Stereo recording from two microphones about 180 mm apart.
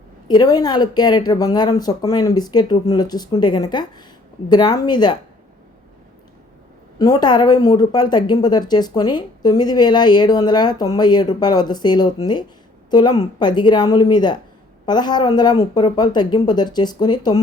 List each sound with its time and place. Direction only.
0.3 s speech: 20° left (ahead or behind)
7.0 s speech: 25° left (ahead or behind)